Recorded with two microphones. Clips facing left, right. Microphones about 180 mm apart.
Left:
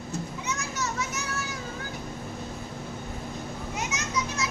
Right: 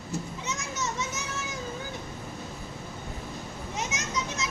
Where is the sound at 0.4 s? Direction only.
25° right (ahead or behind).